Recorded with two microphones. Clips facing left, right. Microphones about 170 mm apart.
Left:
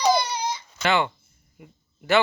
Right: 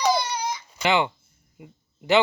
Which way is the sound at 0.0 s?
20° left (ahead or behind).